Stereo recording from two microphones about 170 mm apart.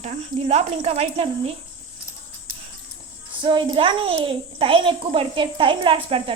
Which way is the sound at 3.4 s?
30° right (ahead or behind).